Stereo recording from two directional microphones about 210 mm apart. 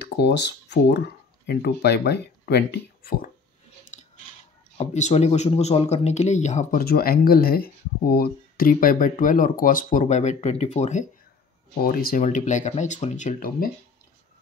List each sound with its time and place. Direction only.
0.0 s speech: 55° left (ahead or behind)
4.7 s speech: 30° left (ahead or behind)
11.8 s speech: 45° left (ahead or behind)